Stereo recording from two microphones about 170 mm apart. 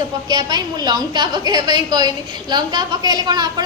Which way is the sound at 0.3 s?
25° right (ahead or behind).